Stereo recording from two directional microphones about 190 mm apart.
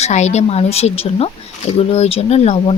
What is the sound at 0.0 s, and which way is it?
Speech, 35° left (ahead or behind).